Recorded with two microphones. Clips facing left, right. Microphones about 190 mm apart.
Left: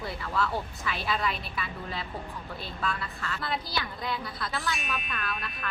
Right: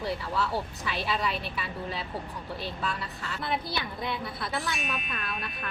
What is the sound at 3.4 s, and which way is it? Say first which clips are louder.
A woman's voice: right 2 dB; 25° right (ahead or behind).